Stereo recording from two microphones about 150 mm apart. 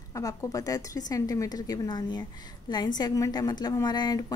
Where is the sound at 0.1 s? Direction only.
20° left (ahead or behind).